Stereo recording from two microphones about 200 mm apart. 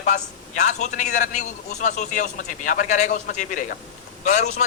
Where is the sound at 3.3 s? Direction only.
50° left (ahead or behind).